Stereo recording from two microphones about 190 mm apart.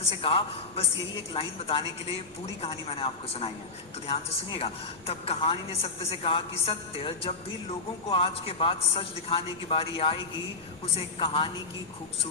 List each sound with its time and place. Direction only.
0.1 s a man's voice: 30° left (ahead or behind)